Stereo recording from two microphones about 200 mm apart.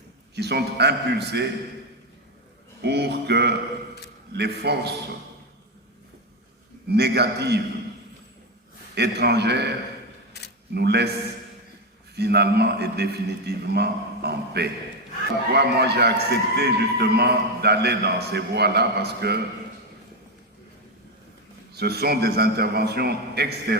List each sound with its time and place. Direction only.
0.3 s a man's voice: 55° right (ahead or behind)
2.8 s a man's voice: 55° right (ahead or behind)
6.8 s a man's voice: 55° right (ahead or behind)
9.0 s a man's voice: 55° right (ahead or behind)
10.3 s camera: 55° left (ahead or behind)
10.8 s a man's voice: 55° right (ahead or behind)
12.1 s a man's voice: 55° right (ahead or behind)
21.7 s a man's voice: 55° right (ahead or behind)